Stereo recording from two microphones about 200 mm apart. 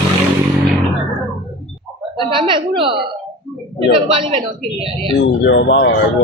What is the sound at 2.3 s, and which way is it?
A woman's voice, 25° right (ahead or behind).